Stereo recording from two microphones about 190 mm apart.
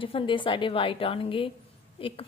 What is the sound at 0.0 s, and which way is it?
Speech, 25° left (ahead or behind).